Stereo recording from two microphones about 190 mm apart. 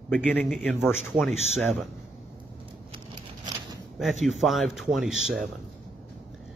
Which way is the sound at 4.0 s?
Centre (ahead or behind).